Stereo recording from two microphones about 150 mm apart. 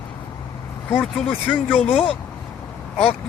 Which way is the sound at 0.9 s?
5° left (ahead or behind).